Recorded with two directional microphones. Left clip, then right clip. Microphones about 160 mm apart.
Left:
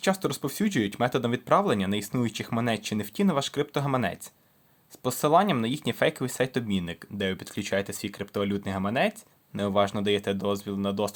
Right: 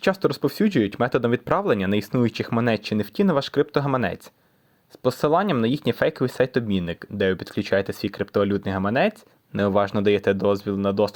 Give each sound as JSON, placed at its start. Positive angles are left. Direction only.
{"t": 0.0, "sound": "speech", "side_deg": -30}